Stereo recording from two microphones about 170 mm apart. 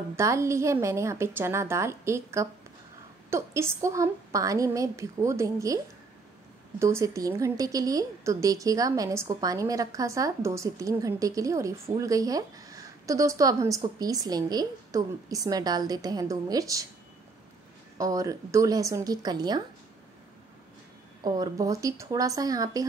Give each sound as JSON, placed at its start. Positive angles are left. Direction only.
{"t": 0.1, "sound": "a woman's voice", "side_deg": -15}
{"t": 6.8, "sound": "a woman's voice", "side_deg": -15}
{"t": 17.9, "sound": "a woman's voice", "side_deg": -20}
{"t": 21.2, "sound": "a woman's voice", "side_deg": -25}